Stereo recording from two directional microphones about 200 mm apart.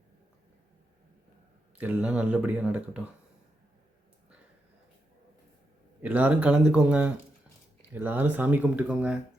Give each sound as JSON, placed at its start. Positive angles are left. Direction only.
{"t": 1.8, "sound": "speech", "side_deg": -5}
{"t": 6.0, "sound": "speech", "side_deg": -10}